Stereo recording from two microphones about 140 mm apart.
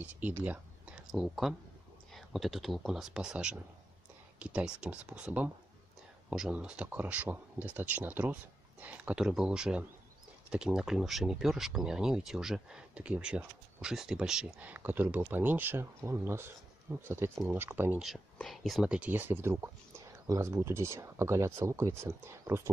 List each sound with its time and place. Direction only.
0.0 s speech: 10° right (ahead or behind)
18.0 s speech: centre (ahead or behind); by 22.7 s 20° right (ahead or behind)